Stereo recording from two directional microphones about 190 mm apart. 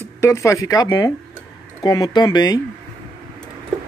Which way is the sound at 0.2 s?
15° left (ahead or behind).